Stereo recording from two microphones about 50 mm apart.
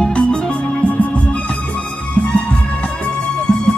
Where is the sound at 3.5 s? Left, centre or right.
Centre.